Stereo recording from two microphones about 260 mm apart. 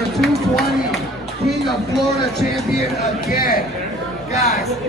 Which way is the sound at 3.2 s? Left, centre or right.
Left.